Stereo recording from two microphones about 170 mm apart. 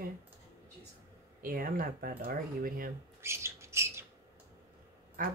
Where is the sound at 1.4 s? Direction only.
55° right (ahead or behind).